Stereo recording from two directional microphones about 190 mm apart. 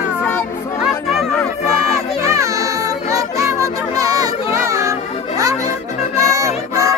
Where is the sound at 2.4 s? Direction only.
15° right (ahead or behind).